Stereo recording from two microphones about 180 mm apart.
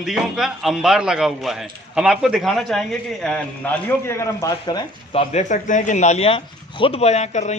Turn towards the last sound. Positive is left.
turn(degrees=40)  # may be behind; listen again after turning